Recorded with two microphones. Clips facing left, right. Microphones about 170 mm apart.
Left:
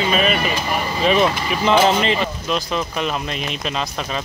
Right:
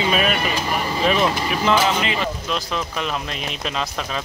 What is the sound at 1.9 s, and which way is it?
Speech, 35° left (ahead or behind).